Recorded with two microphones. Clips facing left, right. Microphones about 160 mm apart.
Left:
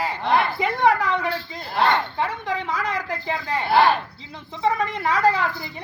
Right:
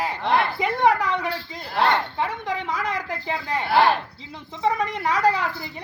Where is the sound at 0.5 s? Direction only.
15° right (ahead or behind).